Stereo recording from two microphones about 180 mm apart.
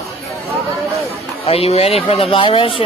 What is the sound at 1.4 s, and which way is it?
Speech, 35° left (ahead or behind).